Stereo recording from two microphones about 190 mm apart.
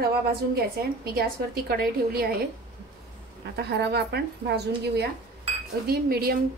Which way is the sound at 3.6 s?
60° right (ahead or behind).